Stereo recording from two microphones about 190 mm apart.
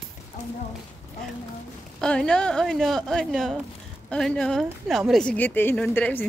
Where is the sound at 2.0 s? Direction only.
5° left (ahead or behind).